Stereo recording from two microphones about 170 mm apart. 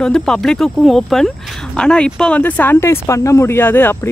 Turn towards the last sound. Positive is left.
turn(degrees=10)  # may be behind; listen again after turning